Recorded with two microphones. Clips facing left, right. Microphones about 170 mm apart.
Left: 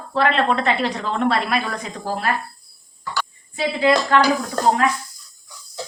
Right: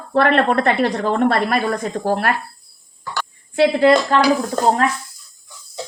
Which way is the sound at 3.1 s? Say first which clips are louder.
Right 1 dB; 60° right (ahead or behind).